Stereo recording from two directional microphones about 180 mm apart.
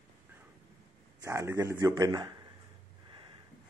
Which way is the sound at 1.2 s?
15° right (ahead or behind).